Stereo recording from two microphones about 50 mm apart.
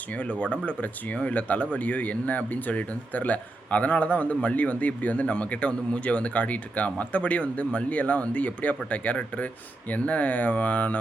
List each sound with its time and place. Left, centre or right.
0.1 s speech: left